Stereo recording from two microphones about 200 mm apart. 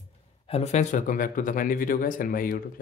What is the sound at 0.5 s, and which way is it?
Speech, 30° left (ahead or behind).